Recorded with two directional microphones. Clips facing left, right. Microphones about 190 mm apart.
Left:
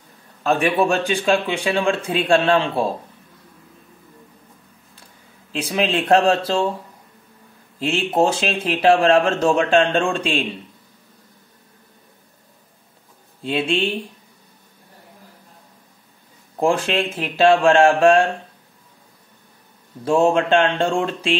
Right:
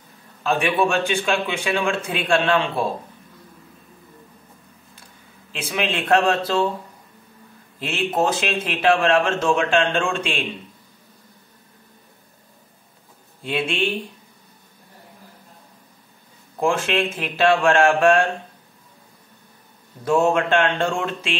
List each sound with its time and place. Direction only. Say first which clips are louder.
0.4 s speech: left 2 dB; 40° left (ahead or behind)
5.5 s speech: left 4 dB; 35° left (ahead or behind)
7.8 s speech: left 3 dB; 30° left (ahead or behind)
13.4 s speech: left 3 dB; 35° left (ahead or behind)
16.5 s speech: left 2 dB; 35° left (ahead or behind)
20.1 s speech: left 2 dB; 30° left (ahead or behind)